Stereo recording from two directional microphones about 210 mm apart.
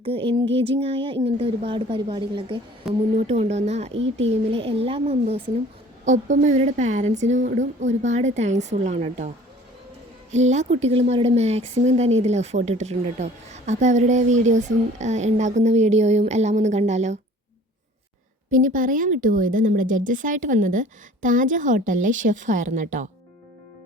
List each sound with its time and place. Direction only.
0.0 s a woman's voice: 25° right (ahead or behind)
2.8 s speech: centre (ahead or behind)
3.2 s speech: 35° right (ahead or behind)
3.9 s speech: 60° right (ahead or behind)
4.3 s a woman's voice: 25° right (ahead or behind)
10.3 s speech: 35° right (ahead or behind)
18.5 s speech: 40° right (ahead or behind)